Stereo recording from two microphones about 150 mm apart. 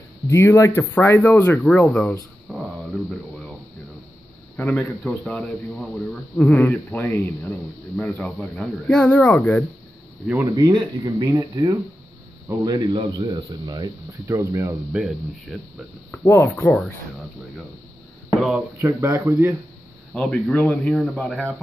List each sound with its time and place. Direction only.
0.3 s a man's voice: 20° left (ahead or behind)
2.5 s a sound: centre (ahead or behind)
4.6 s a man's voice: 15° left (ahead or behind)
10.4 s speech: 25° right (ahead or behind)
14.9 s speech: 5° right (ahead or behind)
16.2 s a man's voice: 20° left (ahead or behind)
18.8 s speech: 15° right (ahead or behind)
20.2 s speech: 5° left (ahead or behind)